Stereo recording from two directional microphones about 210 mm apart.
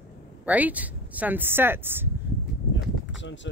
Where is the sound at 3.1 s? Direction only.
60° left (ahead or behind).